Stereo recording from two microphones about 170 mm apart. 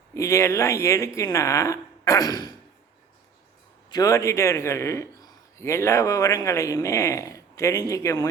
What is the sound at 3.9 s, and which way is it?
A man's voice, 20° left (ahead or behind).